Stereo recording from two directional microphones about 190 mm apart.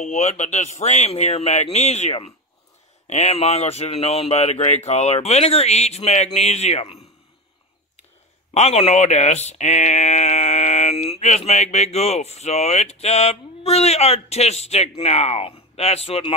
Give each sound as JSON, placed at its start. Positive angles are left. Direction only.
{"t": 0.0, "sound": "speech", "side_deg": 35}
{"t": 8.5, "sound": "speech", "side_deg": 35}